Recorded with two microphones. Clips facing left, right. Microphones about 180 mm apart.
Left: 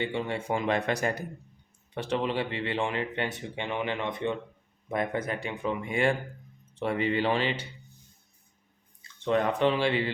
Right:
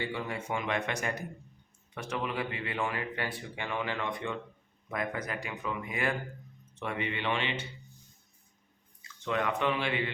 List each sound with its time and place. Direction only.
0.0 s speech: 25° left (ahead or behind)
9.0 s speech: 35° left (ahead or behind)